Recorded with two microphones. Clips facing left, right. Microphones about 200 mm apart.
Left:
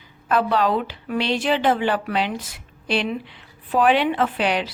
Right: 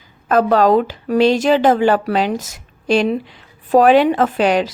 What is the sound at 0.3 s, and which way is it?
A woman's voice, 45° right (ahead or behind).